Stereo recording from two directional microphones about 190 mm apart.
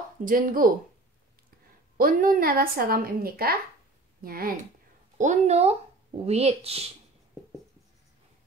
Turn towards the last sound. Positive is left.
turn(degrees=-30)  # may be behind; listen again after turning